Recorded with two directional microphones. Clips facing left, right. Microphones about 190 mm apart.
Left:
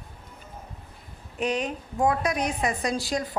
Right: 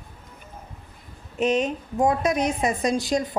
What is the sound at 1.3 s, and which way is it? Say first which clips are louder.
A woman's voice: right 5 dB; 20° right (ahead or behind).